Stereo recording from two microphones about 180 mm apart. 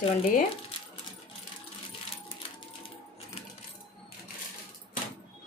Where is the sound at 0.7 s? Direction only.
30° left (ahead or behind).